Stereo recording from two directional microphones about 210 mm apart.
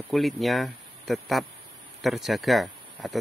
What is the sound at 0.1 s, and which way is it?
Speech, centre (ahead or behind).